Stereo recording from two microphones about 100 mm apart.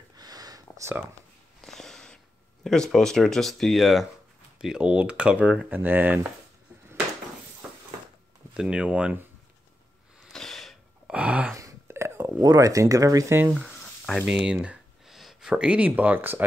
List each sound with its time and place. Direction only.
0.2 s sniff: 40° right (ahead or behind)
1.6 s a sound: 5° left (ahead or behind)
2.6 s speech: 5° left (ahead or behind); by 6.2 s 20° right (ahead or behind)
8.5 s speech: 10° right (ahead or behind)
10.2 s gasp: 5° left (ahead or behind)
11.1 s gasp: 15° right (ahead or behind)
11.5 s a sound: 30° right (ahead or behind)
12.4 s speech: 35° right (ahead or behind)
13.4 s speech: 15° right (ahead or behind)